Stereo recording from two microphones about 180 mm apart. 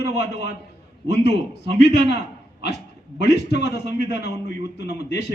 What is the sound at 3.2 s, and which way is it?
A man's voice, 65° left (ahead or behind).